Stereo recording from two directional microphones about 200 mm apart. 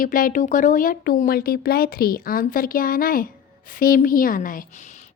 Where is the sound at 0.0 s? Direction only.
45° left (ahead or behind).